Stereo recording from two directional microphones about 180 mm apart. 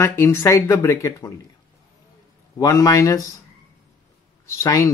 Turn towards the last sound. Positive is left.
turn(degrees=15)  # may be behind; listen again after turning